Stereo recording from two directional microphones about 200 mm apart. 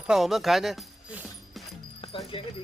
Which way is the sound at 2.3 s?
25° left (ahead or behind).